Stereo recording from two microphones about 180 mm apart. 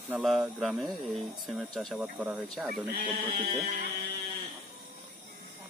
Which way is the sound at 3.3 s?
55° right (ahead or behind).